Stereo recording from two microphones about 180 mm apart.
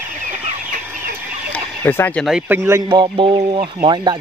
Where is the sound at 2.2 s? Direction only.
5° right (ahead or behind); by 4.2 s 25° right (ahead or behind).